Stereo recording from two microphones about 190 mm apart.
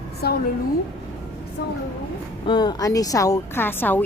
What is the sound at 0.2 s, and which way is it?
Speech, 55° left (ahead or behind).